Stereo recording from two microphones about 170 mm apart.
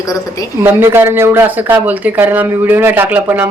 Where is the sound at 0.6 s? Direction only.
15° right (ahead or behind).